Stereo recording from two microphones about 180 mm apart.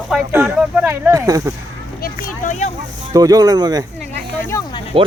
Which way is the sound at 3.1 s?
20° right (ahead or behind).